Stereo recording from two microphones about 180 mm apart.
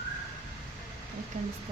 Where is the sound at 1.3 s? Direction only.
45° right (ahead or behind).